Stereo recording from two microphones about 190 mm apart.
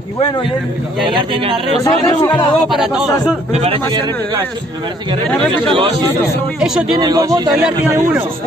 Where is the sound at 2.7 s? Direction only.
Centre (ahead or behind).